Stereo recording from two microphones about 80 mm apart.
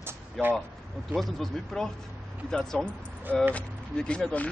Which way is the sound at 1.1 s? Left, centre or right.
Centre.